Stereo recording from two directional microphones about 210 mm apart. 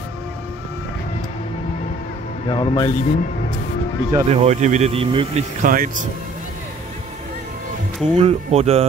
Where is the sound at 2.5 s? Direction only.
20° left (ahead or behind).